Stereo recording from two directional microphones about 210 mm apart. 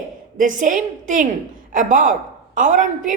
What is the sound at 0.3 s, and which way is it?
A woman's voice, 40° right (ahead or behind).